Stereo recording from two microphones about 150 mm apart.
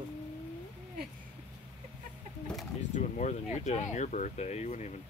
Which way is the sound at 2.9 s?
55° left (ahead or behind).